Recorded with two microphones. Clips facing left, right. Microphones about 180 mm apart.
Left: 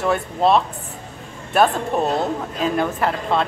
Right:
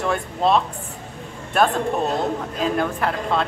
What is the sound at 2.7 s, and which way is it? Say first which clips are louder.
Speech: left 2 dB; centre (ahead or behind).